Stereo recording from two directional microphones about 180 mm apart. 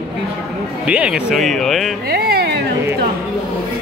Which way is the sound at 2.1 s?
60° right (ahead or behind).